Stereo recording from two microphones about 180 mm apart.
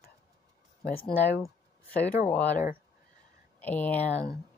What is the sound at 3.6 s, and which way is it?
Speech, 10° left (ahead or behind).